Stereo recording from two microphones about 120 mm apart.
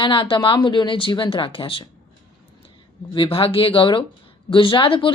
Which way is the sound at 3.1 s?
50° left (ahead or behind).